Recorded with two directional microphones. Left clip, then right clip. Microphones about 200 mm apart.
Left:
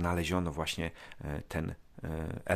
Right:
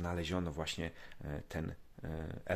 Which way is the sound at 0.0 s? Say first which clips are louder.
Left 6 dB; 30° left (ahead or behind).